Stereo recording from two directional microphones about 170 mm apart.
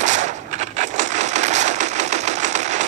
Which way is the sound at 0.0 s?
45° right (ahead or behind).